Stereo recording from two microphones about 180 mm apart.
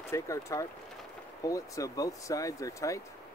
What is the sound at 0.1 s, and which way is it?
Speech, 15° left (ahead or behind).